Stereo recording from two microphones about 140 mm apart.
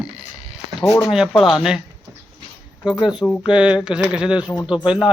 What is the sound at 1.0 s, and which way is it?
Speech, 5° right (ahead or behind).